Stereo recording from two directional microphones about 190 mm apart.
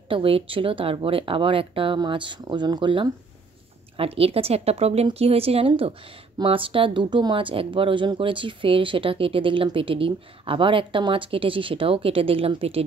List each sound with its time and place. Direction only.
0.1 s speech: 30° right (ahead or behind)